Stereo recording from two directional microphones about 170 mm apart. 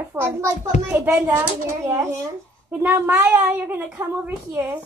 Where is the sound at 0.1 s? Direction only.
15° right (ahead or behind).